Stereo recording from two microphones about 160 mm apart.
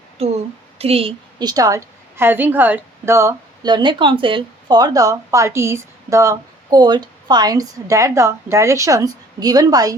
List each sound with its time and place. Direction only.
0.2 s a woman's voice: 40° right (ahead or behind)
1.4 s a woman's voice: 25° right (ahead or behind)